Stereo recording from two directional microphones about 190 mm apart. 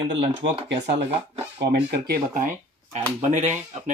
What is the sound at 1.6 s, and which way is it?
Speech, 55° right (ahead or behind).